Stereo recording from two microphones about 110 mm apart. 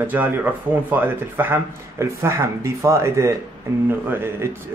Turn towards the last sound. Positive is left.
turn(degrees=-20)  # may be behind; listen again after turning